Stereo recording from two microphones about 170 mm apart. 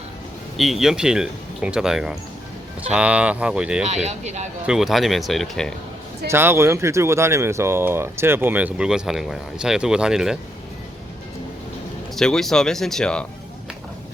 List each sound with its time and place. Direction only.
0.5 s speech: centre (ahead or behind)
3.8 s speech: 40° right (ahead or behind)
4.6 s speech: 5° right (ahead or behind)
6.2 s speech: 15° right (ahead or behind)
12.1 s speech: centre (ahead or behind)